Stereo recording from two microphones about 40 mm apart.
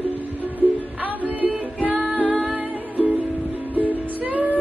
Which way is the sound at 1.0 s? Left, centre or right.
Right.